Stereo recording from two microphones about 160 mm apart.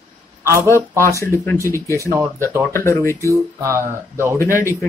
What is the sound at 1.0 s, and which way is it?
Speech, 20° left (ahead or behind).